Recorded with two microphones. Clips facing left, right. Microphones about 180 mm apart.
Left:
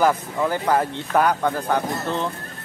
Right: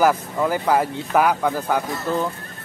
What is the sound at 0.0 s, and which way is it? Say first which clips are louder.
Speech: right 1 dB; 5° right (ahead or behind).